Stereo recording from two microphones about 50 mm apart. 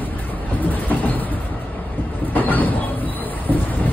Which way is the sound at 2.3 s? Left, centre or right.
Left.